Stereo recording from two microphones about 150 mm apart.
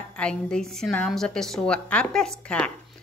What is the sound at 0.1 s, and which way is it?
A woman's voice, 5° left (ahead or behind).